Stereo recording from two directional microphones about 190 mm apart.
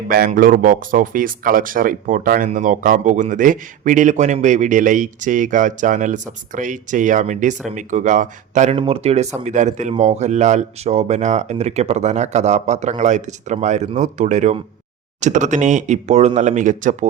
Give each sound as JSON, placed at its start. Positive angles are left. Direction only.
{"t": 0.1, "sound": "speech", "side_deg": -45}
{"t": 8.7, "sound": "speech", "side_deg": -30}